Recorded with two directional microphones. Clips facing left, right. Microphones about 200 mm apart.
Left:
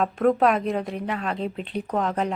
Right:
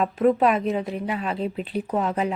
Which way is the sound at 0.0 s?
5° right (ahead or behind).